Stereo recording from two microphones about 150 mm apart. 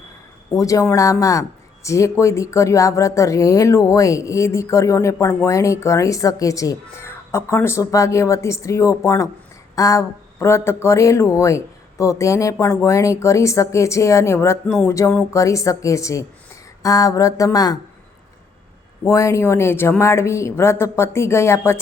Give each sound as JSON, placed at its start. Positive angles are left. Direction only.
{"t": 0.5, "sound": "speech", "side_deg": 20}
{"t": 19.0, "sound": "a woman's voice", "side_deg": 20}